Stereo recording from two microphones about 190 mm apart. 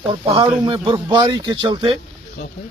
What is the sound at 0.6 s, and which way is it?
Speech, 25° right (ahead or behind).